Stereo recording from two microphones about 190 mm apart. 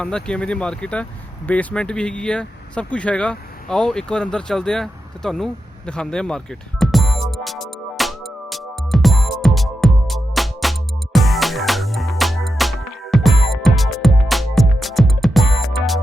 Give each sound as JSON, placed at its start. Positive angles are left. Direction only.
{"t": 0.0, "sound": "speech", "side_deg": 5}
{"t": 1.5, "sound": "vehicle", "side_deg": 5}